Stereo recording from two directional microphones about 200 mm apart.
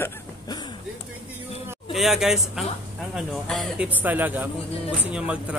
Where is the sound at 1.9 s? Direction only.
Centre (ahead or behind).